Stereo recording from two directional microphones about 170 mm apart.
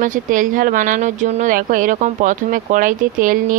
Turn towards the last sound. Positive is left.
turn(degrees=-55)  # may be behind; listen again after turning